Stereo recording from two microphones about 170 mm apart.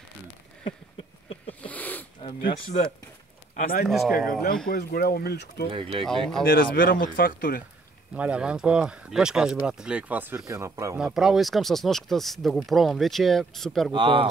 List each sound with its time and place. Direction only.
1.5 s a sound: 10° left (ahead or behind)
2.2 s speech: 30° left (ahead or behind)
3.5 s a man's voice: 60° left (ahead or behind)
3.8 s speech: centre (ahead or behind)
4.3 s speech: 60° left (ahead or behind); by 5.7 s 75° left (ahead or behind)
5.7 s speech: 30° right (ahead or behind)
6.0 s speech: 5° left (ahead or behind)
6.4 s speech: 60° left (ahead or behind)
8.1 s speech: 5° right (ahead or behind)
11.0 s speech: 5° right (ahead or behind)
13.9 s speech: 30° right (ahead or behind)